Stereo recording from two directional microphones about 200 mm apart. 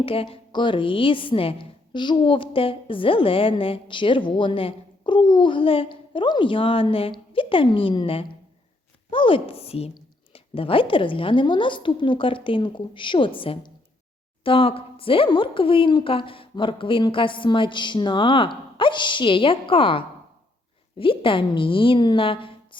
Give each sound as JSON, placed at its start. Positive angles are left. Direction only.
{"t": 0.0, "sound": "a woman's voice", "side_deg": 30}